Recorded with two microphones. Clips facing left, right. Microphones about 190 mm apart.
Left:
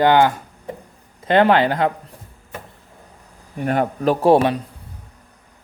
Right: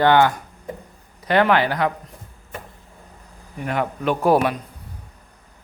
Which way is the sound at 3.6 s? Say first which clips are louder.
Left 4 dB; 40° left (ahead or behind).